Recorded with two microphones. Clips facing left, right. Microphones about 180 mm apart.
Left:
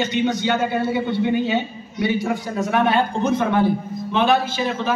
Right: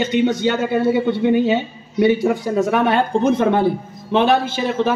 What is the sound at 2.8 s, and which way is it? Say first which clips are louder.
Speech: right 3 dB; 55° right (ahead or behind).